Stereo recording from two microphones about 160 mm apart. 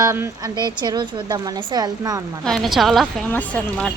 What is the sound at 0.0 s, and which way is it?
A woman's voice, 15° right (ahead or behind).